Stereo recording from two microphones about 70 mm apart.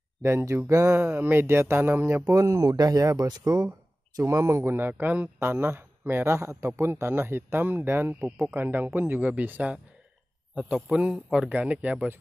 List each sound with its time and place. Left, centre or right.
0.2 s speech: right
0.9 s speech: right
2.2 s speech: right
3.3 s speech: right
4.2 s speech: right
9.3 s speech: centre
11.4 s speech: right